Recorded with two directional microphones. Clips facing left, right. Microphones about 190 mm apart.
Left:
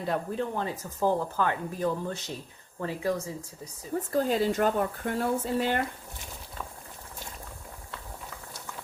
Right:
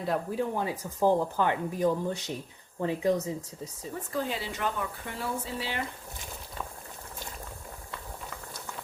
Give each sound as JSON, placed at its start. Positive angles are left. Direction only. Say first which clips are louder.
{"t": 0.0, "sound": "speech", "louder": "even", "side_deg": -5}
{"t": 4.1, "sound": "speech", "louder": "left 8 dB", "side_deg": 45}